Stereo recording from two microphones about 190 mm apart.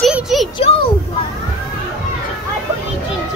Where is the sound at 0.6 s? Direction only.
30° left (ahead or behind).